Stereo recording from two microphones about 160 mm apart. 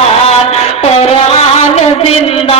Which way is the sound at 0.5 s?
40° left (ahead or behind).